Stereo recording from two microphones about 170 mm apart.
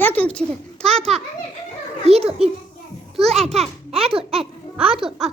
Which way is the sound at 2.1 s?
35° right (ahead or behind).